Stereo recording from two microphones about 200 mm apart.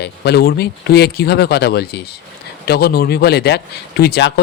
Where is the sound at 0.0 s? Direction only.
55° left (ahead or behind).